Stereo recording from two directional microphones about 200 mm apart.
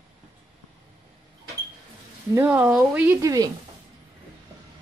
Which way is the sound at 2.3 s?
10° right (ahead or behind).